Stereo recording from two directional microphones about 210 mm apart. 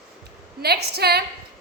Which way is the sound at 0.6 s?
50° right (ahead or behind).